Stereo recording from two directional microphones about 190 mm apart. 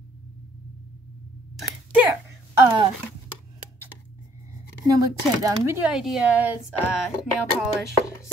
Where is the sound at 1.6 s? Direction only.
5° right (ahead or behind).